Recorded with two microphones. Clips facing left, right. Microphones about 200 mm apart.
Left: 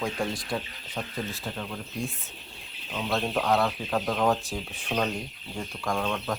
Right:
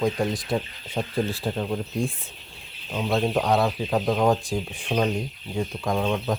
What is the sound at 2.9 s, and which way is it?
Speech, 20° right (ahead or behind).